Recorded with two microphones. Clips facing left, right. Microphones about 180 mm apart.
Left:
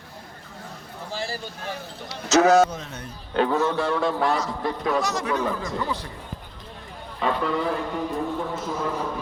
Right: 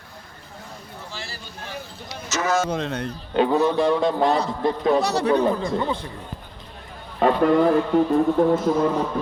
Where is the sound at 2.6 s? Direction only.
75° right (ahead or behind).